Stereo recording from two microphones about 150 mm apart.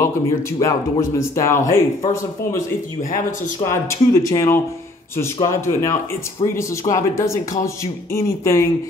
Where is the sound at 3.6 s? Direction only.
30° left (ahead or behind).